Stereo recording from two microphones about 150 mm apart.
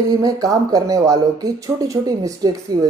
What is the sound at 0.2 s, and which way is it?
Speech, 25° right (ahead or behind).